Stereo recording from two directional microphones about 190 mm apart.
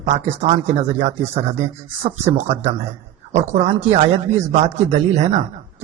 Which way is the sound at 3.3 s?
35° right (ahead or behind).